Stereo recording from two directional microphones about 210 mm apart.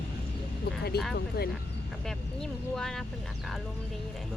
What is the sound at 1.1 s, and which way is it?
Speech, 50° left (ahead or behind).